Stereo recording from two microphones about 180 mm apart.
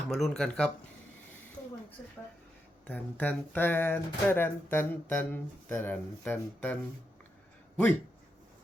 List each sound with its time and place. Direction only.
0.1 s speech: centre (ahead or behind)
2.8 s speech: 10° left (ahead or behind)